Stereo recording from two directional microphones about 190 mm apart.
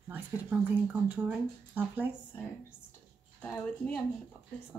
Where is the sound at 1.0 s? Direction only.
10° right (ahead or behind).